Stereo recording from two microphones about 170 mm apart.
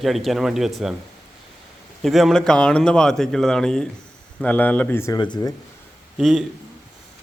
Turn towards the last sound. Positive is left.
turn(degrees=0)  # may be behind; listen again after turning